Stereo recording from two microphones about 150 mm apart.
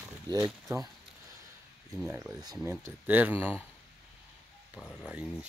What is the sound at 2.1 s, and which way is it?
Speech, 15° right (ahead or behind).